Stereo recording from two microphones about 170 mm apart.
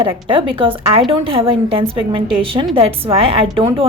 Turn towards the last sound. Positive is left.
turn(degrees=-30)  # may be behind; listen again after turning